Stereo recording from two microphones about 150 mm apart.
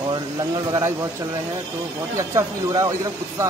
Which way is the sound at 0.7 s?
20° right (ahead or behind).